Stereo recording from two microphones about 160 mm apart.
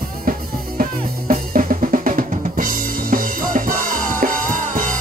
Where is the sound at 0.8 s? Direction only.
60° right (ahead or behind).